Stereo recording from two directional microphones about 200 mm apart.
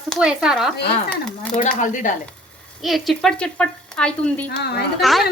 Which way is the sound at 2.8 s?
Centre (ahead or behind).